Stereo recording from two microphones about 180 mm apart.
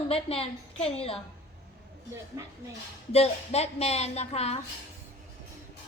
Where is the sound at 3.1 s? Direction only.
35° left (ahead or behind).